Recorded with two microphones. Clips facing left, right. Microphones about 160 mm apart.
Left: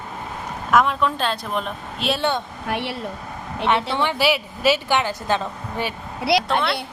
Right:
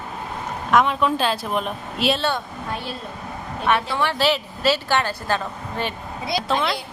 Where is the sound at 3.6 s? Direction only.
20° left (ahead or behind).